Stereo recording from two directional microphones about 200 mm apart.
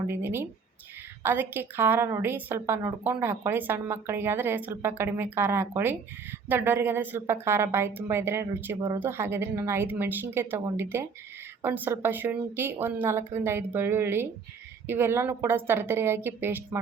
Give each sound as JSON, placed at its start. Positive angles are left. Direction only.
{"t": 0.1, "sound": "a woman's voice", "side_deg": -10}